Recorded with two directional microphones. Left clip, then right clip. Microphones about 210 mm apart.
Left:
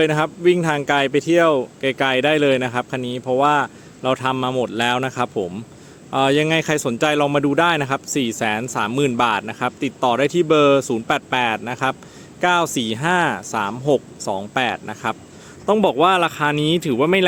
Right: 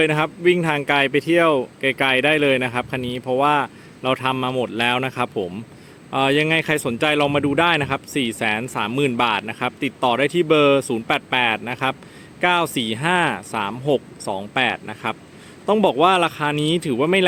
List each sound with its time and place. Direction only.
0.0 s speech: 5° left (ahead or behind)